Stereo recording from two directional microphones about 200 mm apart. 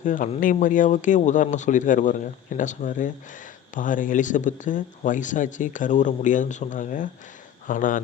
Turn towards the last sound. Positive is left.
turn(degrees=40)  # may be behind; listen again after turning